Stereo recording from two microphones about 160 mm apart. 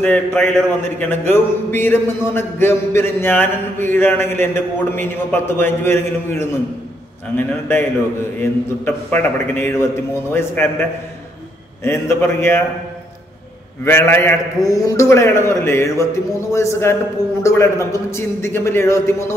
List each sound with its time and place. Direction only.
0.0 s a man's voice: 10° left (ahead or behind)
11.8 s a man's voice: 15° left (ahead or behind)
13.8 s a man's voice: 15° left (ahead or behind)